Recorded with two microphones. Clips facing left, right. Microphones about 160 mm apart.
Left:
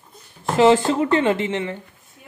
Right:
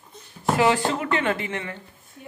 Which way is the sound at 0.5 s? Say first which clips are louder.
Left 6 dB; 25° left (ahead or behind).